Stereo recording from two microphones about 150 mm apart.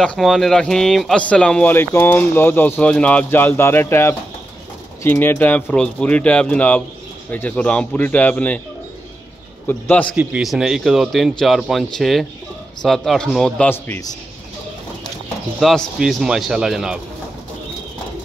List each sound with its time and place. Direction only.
0.0 s speech: 5° left (ahead or behind)
9.7 s speech: 10° left (ahead or behind)
10.1 s speech: 5° right (ahead or behind); by 14.0 s 15° left (ahead or behind)
15.6 s speech: centre (ahead or behind)